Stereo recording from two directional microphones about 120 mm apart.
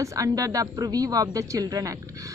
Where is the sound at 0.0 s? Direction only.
30° right (ahead or behind).